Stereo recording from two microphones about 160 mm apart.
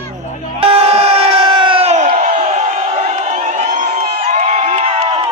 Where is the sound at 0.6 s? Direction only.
40° right (ahead or behind).